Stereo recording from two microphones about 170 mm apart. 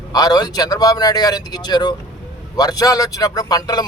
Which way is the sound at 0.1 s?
20° left (ahead or behind).